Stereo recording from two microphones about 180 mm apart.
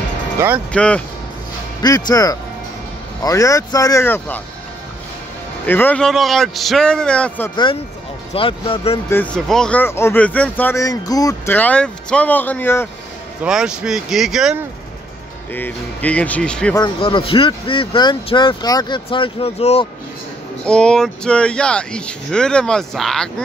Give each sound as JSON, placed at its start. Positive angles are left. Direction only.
{"t": 0.7, "sound": "speech", "side_deg": 5}
{"t": 1.8, "sound": "speech", "side_deg": 20}
{"t": 5.7, "sound": "speech", "side_deg": 10}
{"t": 8.3, "sound": "speech", "side_deg": 30}
{"t": 9.1, "sound": "speech", "side_deg": 5}
{"t": 13.4, "sound": "speech", "side_deg": -5}
{"t": 15.5, "sound": "speech", "side_deg": 10}
{"t": 16.7, "sound": "speech", "side_deg": 25}
{"t": 20.6, "sound": "speech", "side_deg": 5}